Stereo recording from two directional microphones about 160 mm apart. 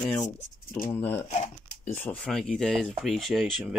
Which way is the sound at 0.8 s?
15° left (ahead or behind).